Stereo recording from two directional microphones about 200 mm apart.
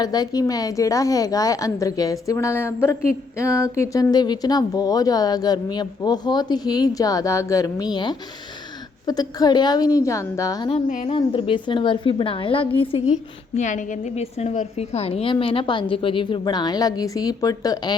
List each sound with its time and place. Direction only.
0.0 s a woman's voice: 20° left (ahead or behind)
10.7 s speech: 35° left (ahead or behind)
11.1 s speech: 25° left (ahead or behind)
13.6 s speech: 40° left (ahead or behind); by 17.9 s 20° left (ahead or behind)